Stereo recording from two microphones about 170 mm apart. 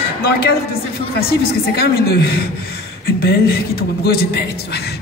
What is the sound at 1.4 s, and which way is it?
A woman's voice, 65° left (ahead or behind).